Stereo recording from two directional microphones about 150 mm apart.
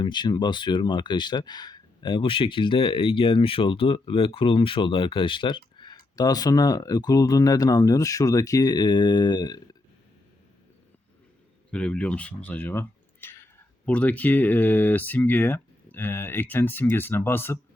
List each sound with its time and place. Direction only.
0.0 s speech: 30° left (ahead or behind)
11.7 s speech: 5° left (ahead or behind)